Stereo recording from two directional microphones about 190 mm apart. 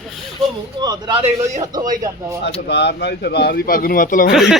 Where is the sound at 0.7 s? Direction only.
20° right (ahead or behind).